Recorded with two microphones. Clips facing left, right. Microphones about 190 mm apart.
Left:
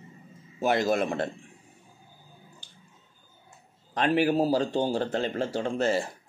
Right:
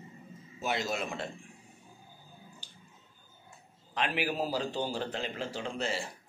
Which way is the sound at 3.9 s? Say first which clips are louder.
Left 9 dB; 45° left (ahead or behind).